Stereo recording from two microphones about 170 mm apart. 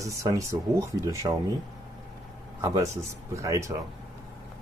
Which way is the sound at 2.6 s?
15° right (ahead or behind).